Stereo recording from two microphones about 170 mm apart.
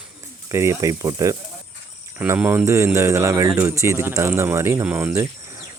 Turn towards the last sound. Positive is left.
turn(degrees=-15)  # may be behind; listen again after turning